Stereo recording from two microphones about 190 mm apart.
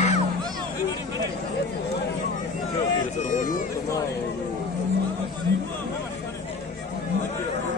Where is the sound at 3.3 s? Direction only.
45° left (ahead or behind).